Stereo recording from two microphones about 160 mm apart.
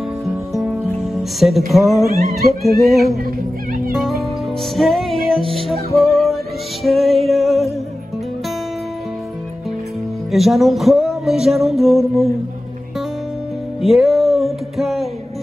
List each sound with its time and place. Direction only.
0.5 s music: centre (ahead or behind)
1.7 s a sound: centre (ahead or behind)
3.3 s speech: 65° right (ahead or behind)
3.9 s music: centre (ahead or behind)
10.3 s a sound: centre (ahead or behind)
13.7 s music: centre (ahead or behind)